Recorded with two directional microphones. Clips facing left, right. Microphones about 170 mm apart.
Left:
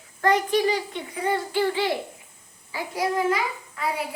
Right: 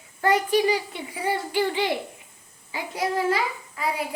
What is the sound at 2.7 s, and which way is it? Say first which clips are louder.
Speech: left 1 dB; 25° right (ahead or behind).